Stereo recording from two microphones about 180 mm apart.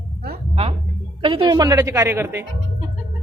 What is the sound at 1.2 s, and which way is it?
A woman's voice, 30° right (ahead or behind).